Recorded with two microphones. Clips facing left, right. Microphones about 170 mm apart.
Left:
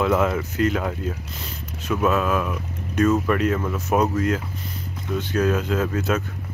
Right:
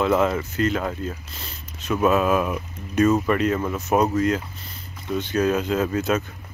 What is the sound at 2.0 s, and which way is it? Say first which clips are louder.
Speech: right 3 dB; 10° right (ahead or behind).